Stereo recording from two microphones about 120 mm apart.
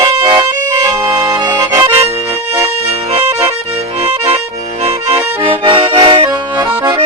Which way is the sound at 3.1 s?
55° right (ahead or behind).